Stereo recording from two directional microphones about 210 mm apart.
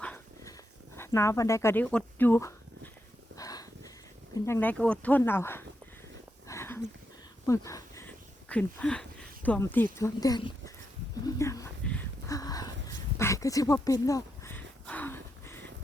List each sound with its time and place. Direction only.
0.0 s dog: 5° left (ahead or behind)
0.9 s speech: 10° left (ahead or behind)
3.3 s a sound: 15° left (ahead or behind)
4.4 s speech: 10° left (ahead or behind)
6.5 s dog: 10° left (ahead or behind)
7.4 s speech: 15° left (ahead or behind)
11.3 s a sound: 15° left (ahead or behind)